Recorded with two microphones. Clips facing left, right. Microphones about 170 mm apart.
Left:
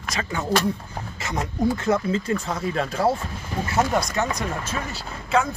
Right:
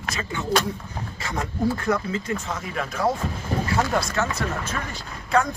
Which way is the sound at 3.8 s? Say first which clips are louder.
Left 4 dB; 20° left (ahead or behind).